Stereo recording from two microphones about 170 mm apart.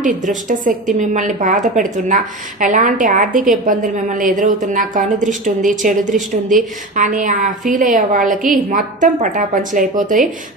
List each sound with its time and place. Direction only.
0.0 s a woman's voice: 50° right (ahead or behind)